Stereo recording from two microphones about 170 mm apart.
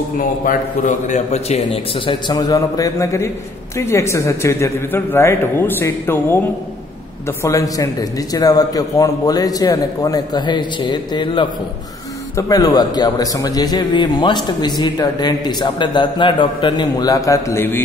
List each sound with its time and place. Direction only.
0.2 s a man's voice: 50° left (ahead or behind); by 17.8 s 15° left (ahead or behind)